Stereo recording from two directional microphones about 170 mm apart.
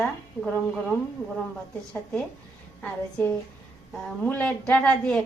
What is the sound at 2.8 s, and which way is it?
A woman's voice, 10° left (ahead or behind).